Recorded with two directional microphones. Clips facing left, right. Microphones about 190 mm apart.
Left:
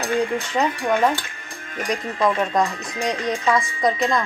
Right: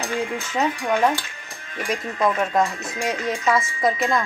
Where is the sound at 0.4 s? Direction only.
10° right (ahead or behind).